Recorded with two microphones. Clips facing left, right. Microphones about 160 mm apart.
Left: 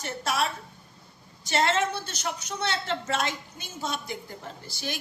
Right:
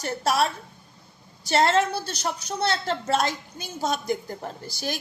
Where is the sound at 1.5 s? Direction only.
40° right (ahead or behind).